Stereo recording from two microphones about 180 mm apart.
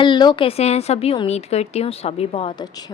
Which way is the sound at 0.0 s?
25° left (ahead or behind).